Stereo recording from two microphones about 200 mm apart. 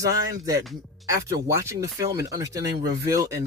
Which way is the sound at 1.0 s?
15° right (ahead or behind).